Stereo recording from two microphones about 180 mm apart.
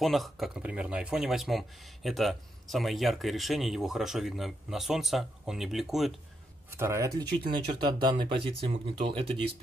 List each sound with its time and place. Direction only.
0.0 s speech: centre (ahead or behind)
6.8 s speech: 15° right (ahead or behind)
7.4 s speech: 25° right (ahead or behind)